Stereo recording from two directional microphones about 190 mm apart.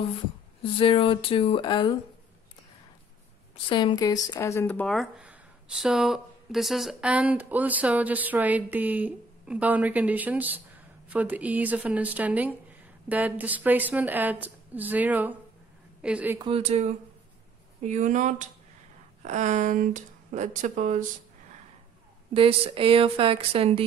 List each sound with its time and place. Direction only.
0.7 s speech: 25° left (ahead or behind)
3.6 s speech: 25° left (ahead or behind); by 16.3 s 5° right (ahead or behind)
16.3 s speech: 30° right (ahead or behind)
22.3 s a woman's voice: 30° right (ahead or behind)